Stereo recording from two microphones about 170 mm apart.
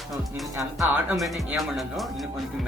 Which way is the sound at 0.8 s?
Centre (ahead or behind).